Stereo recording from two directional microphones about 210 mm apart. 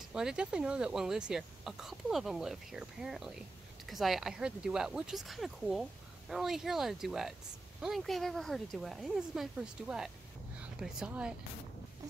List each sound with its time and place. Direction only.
0.1 s speech: 5° right (ahead or behind)